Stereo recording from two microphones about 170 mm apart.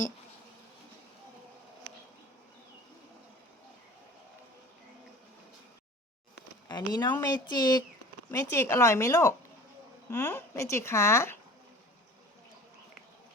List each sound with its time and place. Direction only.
6.7 s speech: 25° left (ahead or behind)